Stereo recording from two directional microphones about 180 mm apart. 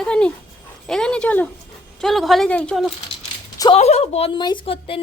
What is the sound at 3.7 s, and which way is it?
A woman's voice, 35° left (ahead or behind).